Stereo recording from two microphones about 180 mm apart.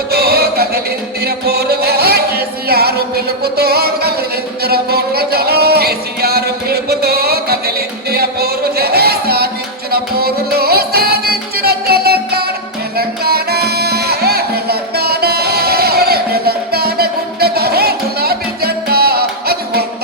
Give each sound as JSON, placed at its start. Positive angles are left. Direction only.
{"t": 0.1, "sound": "music", "side_deg": -60}